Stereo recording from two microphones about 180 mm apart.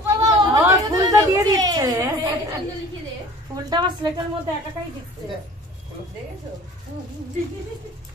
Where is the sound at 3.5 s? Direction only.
20° right (ahead or behind).